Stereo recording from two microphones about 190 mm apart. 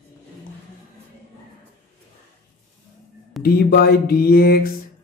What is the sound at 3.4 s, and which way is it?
Speech, 55° left (ahead or behind).